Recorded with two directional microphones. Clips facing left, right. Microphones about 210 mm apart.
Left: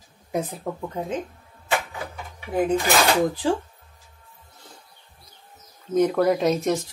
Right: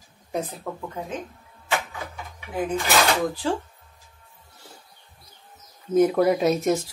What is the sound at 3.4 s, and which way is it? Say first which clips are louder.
Speech: left 1 dB; 15° left (ahead or behind).